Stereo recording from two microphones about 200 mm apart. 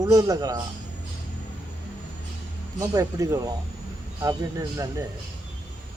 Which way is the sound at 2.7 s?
15° right (ahead or behind).